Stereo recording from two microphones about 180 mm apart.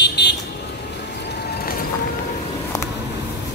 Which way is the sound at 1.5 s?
55° left (ahead or behind).